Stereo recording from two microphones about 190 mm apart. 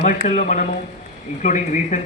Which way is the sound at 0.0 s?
40° left (ahead or behind).